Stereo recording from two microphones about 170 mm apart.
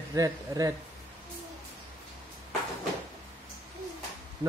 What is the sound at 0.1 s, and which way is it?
Speech, 20° right (ahead or behind).